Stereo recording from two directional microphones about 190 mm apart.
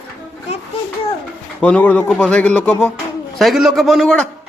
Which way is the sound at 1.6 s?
5° left (ahead or behind).